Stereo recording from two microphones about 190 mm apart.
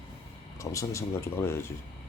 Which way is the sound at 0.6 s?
15° left (ahead or behind).